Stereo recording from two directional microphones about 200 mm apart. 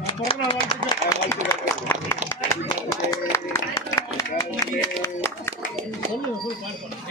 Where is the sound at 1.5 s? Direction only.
10° left (ahead or behind).